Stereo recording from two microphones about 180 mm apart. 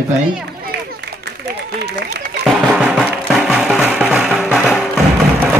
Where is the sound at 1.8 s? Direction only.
65° right (ahead or behind).